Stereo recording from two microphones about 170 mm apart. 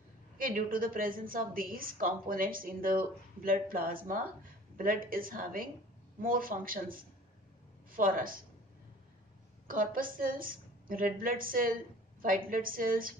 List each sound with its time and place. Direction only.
0.4 s a woman's voice: 55° right (ahead or behind)
9.7 s a woman's voice: 55° right (ahead or behind)